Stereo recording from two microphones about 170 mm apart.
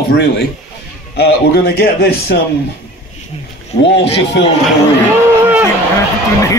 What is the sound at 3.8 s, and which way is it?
Speech, 90° left.